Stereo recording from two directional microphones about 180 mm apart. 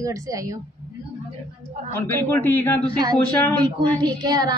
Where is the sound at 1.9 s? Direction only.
10° left (ahead or behind).